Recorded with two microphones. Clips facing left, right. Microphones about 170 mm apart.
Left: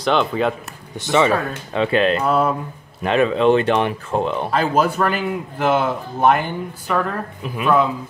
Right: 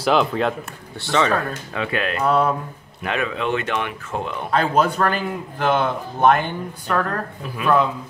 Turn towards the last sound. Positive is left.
turn(degrees=20)  # may be behind; listen again after turning